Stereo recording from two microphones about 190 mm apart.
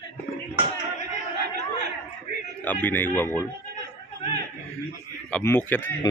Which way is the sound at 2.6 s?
10° left (ahead or behind).